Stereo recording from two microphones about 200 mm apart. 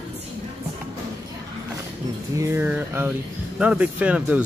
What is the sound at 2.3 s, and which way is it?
Speech, 15° right (ahead or behind).